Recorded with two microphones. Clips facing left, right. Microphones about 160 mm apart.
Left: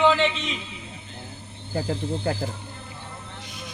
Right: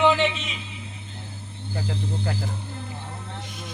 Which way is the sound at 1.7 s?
40° left (ahead or behind).